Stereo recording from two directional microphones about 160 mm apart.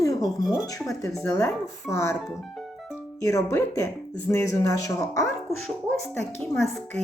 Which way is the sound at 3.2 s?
20° left (ahead or behind).